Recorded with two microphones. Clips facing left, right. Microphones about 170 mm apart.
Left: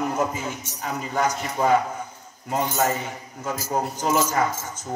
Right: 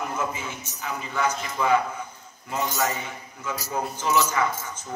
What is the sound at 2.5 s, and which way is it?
A man's voice, 50° left (ahead or behind).